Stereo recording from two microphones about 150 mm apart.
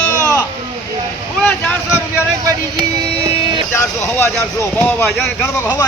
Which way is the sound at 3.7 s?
15° left (ahead or behind).